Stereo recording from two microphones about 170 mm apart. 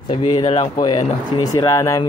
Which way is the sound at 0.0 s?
25° left (ahead or behind).